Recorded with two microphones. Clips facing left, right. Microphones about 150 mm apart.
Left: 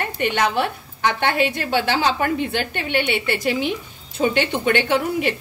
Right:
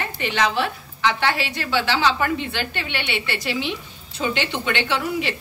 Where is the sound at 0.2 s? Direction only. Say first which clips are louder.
Left 2 dB; 55° left (ahead or behind).